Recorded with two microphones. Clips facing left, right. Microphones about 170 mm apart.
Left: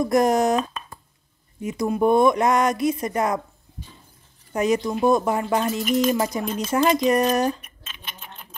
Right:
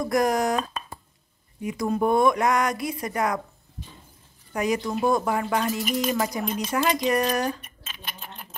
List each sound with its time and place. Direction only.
0.0 s speech: 25° left (ahead or behind)
1.6 s speech: 25° left (ahead or behind)
4.6 s speech: 25° left (ahead or behind)